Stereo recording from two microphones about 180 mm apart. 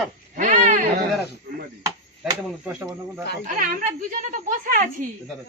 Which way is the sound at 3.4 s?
45° right (ahead or behind).